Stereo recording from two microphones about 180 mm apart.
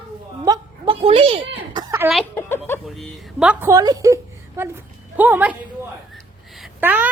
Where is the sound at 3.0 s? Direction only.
5° right (ahead or behind).